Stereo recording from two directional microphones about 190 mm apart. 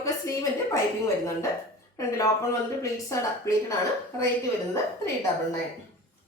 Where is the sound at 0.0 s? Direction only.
15° left (ahead or behind).